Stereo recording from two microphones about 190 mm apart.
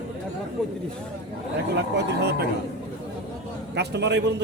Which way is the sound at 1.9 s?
60° right (ahead or behind).